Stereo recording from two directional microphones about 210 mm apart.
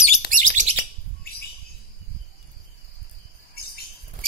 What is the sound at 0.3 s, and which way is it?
Chirp, 40° right (ahead or behind).